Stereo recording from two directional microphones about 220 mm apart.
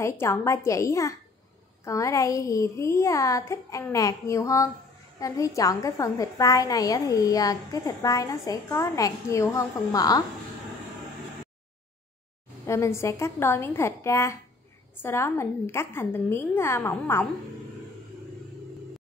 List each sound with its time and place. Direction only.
0.0 s a woman's voice: 10° left (ahead or behind)
12.6 s a woman's voice: 10° left (ahead or behind)